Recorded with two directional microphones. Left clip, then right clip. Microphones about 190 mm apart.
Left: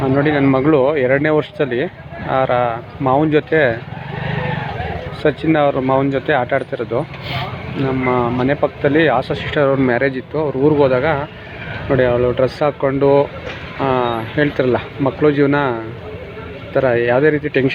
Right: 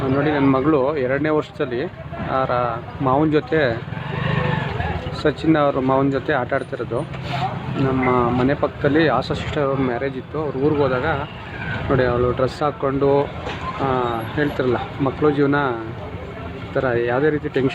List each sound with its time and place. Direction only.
0.2 s speech: 10° left (ahead or behind)
5.2 s speech: 5° left (ahead or behind)
9.6 s speech: 20° left (ahead or behind)